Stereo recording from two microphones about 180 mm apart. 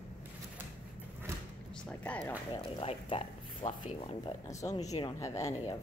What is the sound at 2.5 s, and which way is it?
Speech, 30° left (ahead or behind).